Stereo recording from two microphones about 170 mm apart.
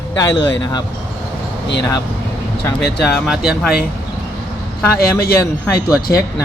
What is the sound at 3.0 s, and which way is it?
Speech, 5° left (ahead or behind).